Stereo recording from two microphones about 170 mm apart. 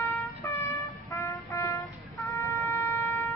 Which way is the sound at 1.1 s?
15° left (ahead or behind).